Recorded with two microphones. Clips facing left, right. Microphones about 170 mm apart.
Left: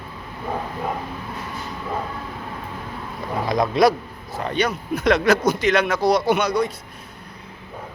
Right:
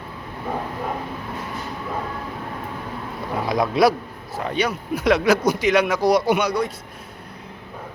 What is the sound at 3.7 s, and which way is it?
Speech, 5° right (ahead or behind).